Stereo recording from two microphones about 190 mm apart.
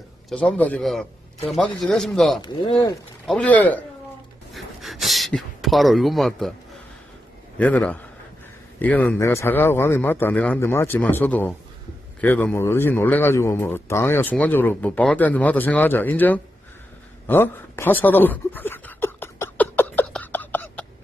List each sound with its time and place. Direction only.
0.3 s speech: 5° left (ahead or behind)
2.4 s speech: 20° left (ahead or behind)
3.3 s a man's voice: 5° left (ahead or behind)
7.5 s a man's voice: 5° left (ahead or behind)
17.3 s a sound: 10° left (ahead or behind)